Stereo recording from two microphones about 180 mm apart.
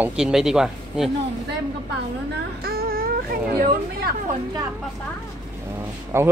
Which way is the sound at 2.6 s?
55° right (ahead or behind).